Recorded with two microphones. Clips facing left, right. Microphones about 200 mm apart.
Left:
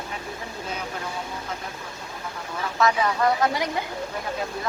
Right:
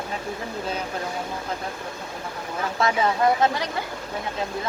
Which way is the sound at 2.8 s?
30° right (ahead or behind).